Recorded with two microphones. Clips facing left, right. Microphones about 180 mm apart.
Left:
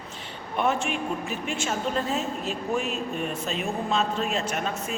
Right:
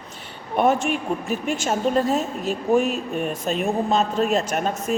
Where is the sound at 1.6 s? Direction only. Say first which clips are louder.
Right 8 dB; 45° right (ahead or behind).